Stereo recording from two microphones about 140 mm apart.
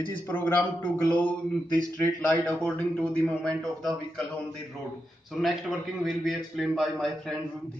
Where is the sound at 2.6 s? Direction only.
5° left (ahead or behind).